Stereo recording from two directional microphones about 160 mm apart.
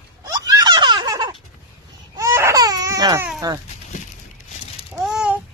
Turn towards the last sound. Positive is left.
turn(degrees=-5)  # may be behind; listen again after turning